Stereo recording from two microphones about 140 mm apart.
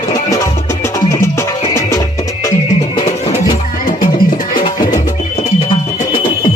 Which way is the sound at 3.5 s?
30° left (ahead or behind).